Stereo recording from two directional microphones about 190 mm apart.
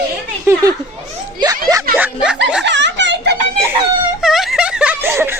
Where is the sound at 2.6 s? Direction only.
70° right (ahead or behind).